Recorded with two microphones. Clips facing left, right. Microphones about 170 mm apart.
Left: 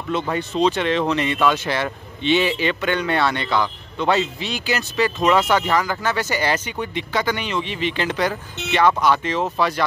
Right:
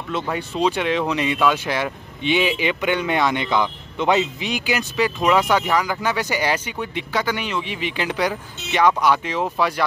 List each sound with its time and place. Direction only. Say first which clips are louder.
0.1 s speech: left 3 dB; 5° right (ahead or behind)